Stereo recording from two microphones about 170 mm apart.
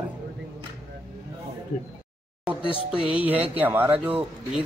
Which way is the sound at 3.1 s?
10° right (ahead or behind).